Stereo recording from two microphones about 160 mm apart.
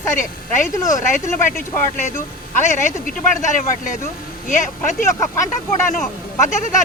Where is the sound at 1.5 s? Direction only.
50° left (ahead or behind).